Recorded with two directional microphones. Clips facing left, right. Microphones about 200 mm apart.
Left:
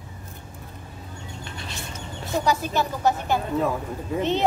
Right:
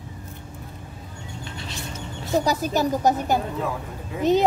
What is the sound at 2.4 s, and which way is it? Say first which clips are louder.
Speech: right 2 dB; 40° right (ahead or behind).